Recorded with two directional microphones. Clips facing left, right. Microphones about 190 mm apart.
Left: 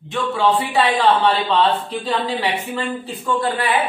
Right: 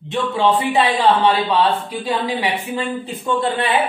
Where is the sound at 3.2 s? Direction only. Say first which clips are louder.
Right 1 dB; 20° right (ahead or behind).